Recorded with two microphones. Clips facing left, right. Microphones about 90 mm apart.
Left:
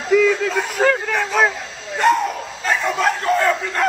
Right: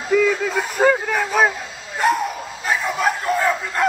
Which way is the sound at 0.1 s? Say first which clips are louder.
Left 2 dB; 5° right (ahead or behind).